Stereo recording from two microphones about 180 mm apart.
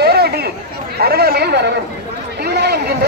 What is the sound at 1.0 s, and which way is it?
Chatter, 60° right (ahead or behind).